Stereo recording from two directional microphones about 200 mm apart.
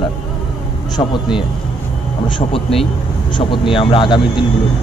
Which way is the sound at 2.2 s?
25° left (ahead or behind).